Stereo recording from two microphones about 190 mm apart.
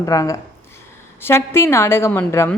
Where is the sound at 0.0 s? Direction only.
20° left (ahead or behind).